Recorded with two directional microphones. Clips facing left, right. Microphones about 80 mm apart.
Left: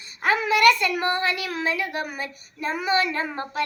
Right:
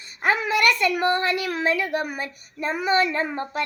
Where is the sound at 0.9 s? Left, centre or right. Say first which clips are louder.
Right 2 dB; right.